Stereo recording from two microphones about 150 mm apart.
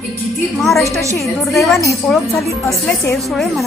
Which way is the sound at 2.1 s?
5° left (ahead or behind).